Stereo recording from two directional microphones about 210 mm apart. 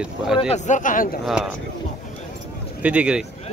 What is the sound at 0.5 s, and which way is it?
Speech, 35° left (ahead or behind).